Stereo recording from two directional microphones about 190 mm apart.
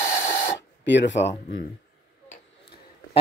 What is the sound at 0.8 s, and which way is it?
Speech, 65° left (ahead or behind).